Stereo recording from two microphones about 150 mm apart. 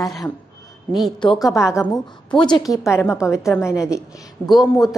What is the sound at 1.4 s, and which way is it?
A woman's voice, 20° left (ahead or behind).